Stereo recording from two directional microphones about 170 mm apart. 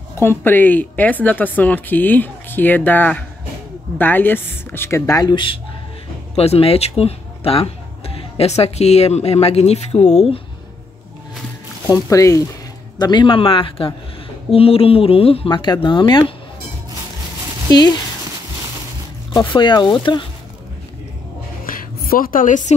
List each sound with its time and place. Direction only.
0.2 s a woman's voice: 15° left (ahead or behind); by 10.4 s 35° left (ahead or behind)
11.9 s speech: 20° left (ahead or behind)
17.6 s speech: 25° left (ahead or behind)
19.3 s speech: 30° left (ahead or behind)
21.6 s a sound: 60° left (ahead or behind)